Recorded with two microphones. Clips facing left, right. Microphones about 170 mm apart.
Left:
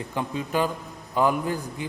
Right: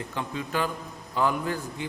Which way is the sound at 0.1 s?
15° left (ahead or behind).